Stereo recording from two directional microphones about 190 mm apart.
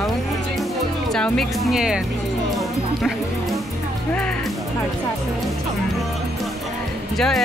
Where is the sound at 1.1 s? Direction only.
5° left (ahead or behind).